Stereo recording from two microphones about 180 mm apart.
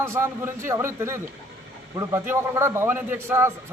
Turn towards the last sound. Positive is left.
turn(degrees=-15)  # may be behind; listen again after turning